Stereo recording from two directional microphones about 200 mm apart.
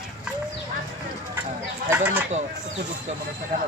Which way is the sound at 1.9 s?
10° right (ahead or behind).